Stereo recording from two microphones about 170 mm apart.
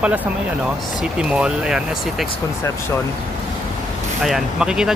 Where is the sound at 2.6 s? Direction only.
15° left (ahead or behind).